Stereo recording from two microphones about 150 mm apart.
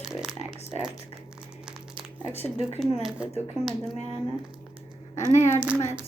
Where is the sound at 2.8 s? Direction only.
Centre (ahead or behind).